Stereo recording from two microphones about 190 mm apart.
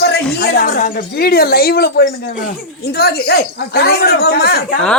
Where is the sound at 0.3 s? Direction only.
55° left (ahead or behind).